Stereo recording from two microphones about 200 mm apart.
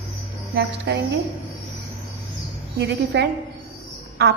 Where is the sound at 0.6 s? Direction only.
50° right (ahead or behind).